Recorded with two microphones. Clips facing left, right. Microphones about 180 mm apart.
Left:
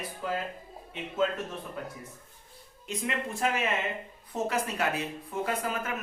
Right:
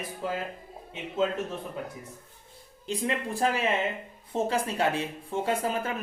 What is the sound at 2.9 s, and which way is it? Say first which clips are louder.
Speech: right 3 dB; 35° right (ahead or behind).